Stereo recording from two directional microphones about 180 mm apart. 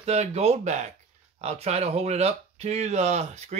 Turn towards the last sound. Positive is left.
turn(degrees=-40)  # may be behind; listen again after turning